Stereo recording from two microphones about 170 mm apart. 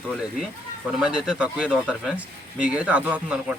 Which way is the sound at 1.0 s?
5° right (ahead or behind).